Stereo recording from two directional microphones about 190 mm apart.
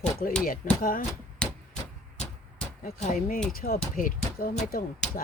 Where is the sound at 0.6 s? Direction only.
45° left (ahead or behind).